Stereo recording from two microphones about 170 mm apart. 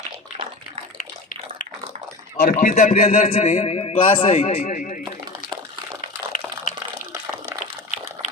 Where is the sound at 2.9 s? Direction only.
35° left (ahead or behind).